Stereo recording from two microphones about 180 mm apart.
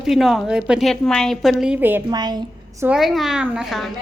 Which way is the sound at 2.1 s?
25° right (ahead or behind).